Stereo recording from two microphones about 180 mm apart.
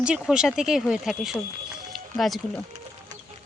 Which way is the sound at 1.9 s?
Centre (ahead or behind).